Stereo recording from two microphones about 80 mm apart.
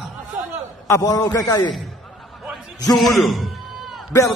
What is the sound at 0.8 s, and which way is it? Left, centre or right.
Speech, left.